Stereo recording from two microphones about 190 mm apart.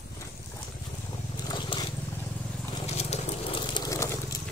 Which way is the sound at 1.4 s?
20° left (ahead or behind).